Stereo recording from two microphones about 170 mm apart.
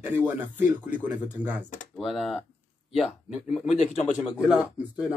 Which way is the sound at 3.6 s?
40° left (ahead or behind).